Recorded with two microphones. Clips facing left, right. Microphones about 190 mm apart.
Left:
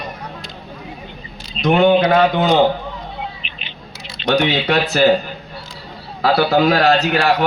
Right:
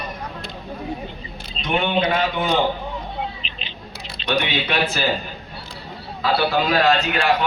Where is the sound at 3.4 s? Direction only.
35° right (ahead or behind).